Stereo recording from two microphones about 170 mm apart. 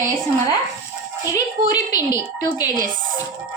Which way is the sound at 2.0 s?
15° right (ahead or behind).